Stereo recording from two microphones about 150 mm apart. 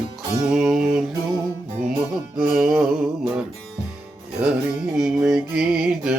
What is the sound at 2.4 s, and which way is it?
Music, centre (ahead or behind).